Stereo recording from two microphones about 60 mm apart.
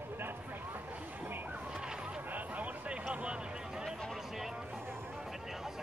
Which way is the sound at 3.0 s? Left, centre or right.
Centre.